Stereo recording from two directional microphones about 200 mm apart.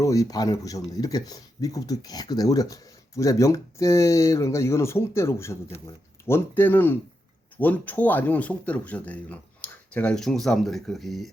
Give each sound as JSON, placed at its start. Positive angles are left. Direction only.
{"t": 0.0, "sound": "speech", "side_deg": 15}